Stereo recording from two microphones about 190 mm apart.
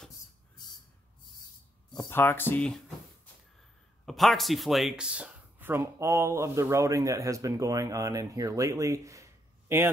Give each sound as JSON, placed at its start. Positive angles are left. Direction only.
{"t": 2.0, "sound": "speech", "side_deg": 10}
{"t": 4.0, "sound": "speech", "side_deg": 0}